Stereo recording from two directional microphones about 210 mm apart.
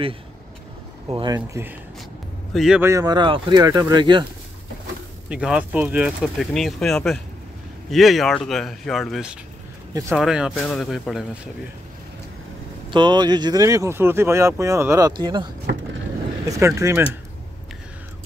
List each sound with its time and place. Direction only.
1.0 s speech: 20° right (ahead or behind)
2.5 s speech: 5° right (ahead or behind); by 4.3 s 20° right (ahead or behind)
5.3 s speech: 5° right (ahead or behind)
12.9 s speech: 20° right (ahead or behind)